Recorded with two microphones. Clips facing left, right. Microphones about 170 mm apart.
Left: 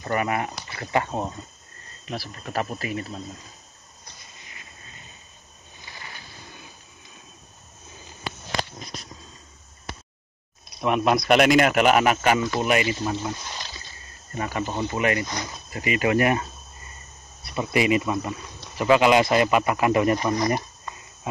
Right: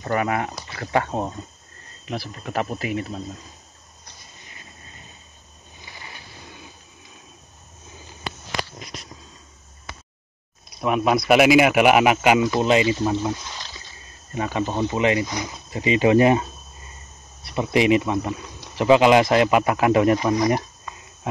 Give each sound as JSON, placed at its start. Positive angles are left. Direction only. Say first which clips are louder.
{"t": 0.1, "sound": "speech", "louder": "right 2 dB", "side_deg": 10}
{"t": 2.0, "sound": "speech", "louder": "right 3 dB", "side_deg": -15}
{"t": 10.8, "sound": "speech", "louder": "right 1 dB", "side_deg": 0}
{"t": 14.3, "sound": "speech", "louder": "right 3 dB", "side_deg": -15}
{"t": 15.7, "sound": "speech", "louder": "right 5 dB", "side_deg": -25}
{"t": 17.6, "sound": "speech", "louder": "right 3 dB", "side_deg": -20}